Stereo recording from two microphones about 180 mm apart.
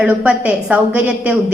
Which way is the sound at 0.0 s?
5° right (ahead or behind).